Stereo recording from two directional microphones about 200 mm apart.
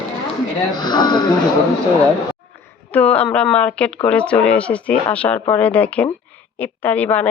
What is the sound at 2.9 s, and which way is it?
Speech, 5° left (ahead or behind).